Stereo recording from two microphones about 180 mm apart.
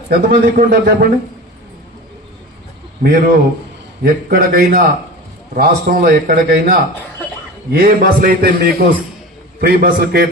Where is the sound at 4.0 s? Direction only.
60° right (ahead or behind).